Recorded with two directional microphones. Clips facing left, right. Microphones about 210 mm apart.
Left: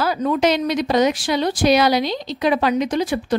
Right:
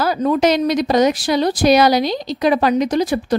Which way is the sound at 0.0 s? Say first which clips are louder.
Right 3 dB; 40° right (ahead or behind).